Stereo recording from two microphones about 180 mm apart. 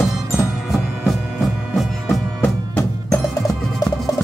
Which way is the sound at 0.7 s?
Centre (ahead or behind).